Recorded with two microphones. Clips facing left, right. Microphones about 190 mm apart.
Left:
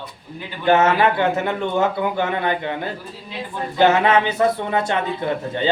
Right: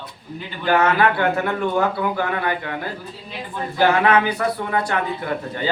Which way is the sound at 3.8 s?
25° left (ahead or behind).